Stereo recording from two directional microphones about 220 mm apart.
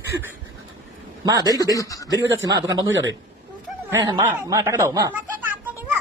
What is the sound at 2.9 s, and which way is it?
Speech, 60° right (ahead or behind).